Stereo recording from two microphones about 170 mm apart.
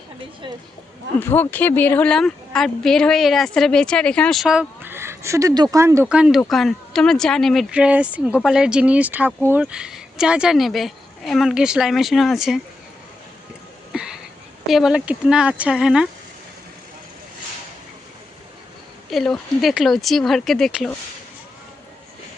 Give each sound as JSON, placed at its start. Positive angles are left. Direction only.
{"t": 0.4, "sound": "speech", "side_deg": -25}
{"t": 1.2, "sound": "a woman's voice", "side_deg": 10}
{"t": 13.9, "sound": "a sound", "side_deg": -5}
{"t": 14.7, "sound": "a woman's voice", "side_deg": 0}
{"t": 19.1, "sound": "a woman's voice", "side_deg": 0}